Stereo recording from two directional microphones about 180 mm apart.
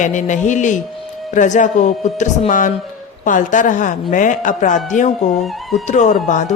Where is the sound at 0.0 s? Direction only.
45° left (ahead or behind).